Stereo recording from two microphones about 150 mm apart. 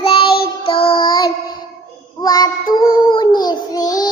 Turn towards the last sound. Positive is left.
turn(degrees=25)  # may be behind; listen again after turning